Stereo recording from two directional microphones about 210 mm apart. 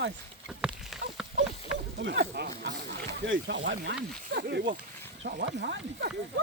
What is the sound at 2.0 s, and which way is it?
Speech, 55° right (ahead or behind).